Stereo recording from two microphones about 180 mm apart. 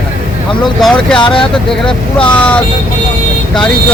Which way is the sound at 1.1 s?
25° left (ahead or behind).